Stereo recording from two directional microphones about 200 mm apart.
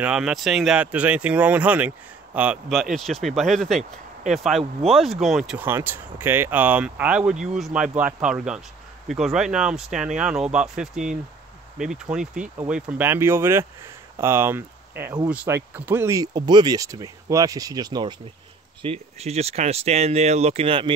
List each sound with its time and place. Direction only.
0.0 s speech: 5° right (ahead or behind); by 18.1 s 20° right (ahead or behind)
18.8 s speech: 30° right (ahead or behind)